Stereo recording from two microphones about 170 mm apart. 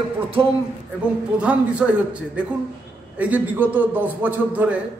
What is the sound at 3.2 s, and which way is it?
A man's voice, 10° right (ahead or behind).